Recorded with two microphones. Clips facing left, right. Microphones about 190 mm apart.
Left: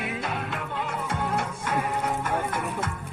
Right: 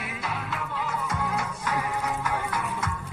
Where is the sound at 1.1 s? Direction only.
30° left (ahead or behind).